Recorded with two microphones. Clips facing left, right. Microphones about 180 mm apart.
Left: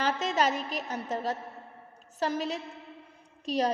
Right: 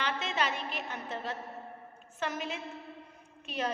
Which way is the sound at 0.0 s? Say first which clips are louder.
Left 6 dB; 40° left (ahead or behind).